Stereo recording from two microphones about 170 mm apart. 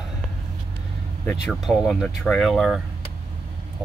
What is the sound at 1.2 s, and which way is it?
Speech, centre (ahead or behind).